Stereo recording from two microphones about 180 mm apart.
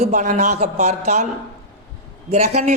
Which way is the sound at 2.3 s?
40° right (ahead or behind).